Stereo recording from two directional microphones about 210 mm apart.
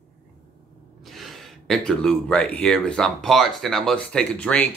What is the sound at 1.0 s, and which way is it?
Speech, centre (ahead or behind).